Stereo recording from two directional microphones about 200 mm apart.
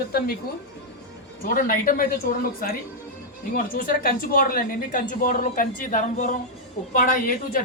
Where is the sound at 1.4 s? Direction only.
45° left (ahead or behind).